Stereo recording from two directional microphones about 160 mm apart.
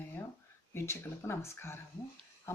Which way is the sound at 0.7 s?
15° left (ahead or behind).